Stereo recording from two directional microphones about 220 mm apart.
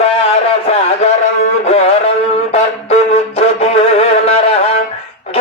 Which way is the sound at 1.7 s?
30° left (ahead or behind).